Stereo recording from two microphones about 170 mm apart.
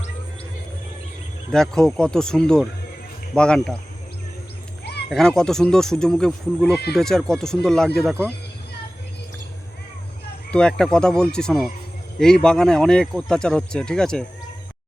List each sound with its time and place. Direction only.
1.5 s speech: centre (ahead or behind)
4.8 s cat: 75° left (ahead or behind)
5.0 s speech: centre (ahead or behind)
10.5 s speech: 5° left (ahead or behind)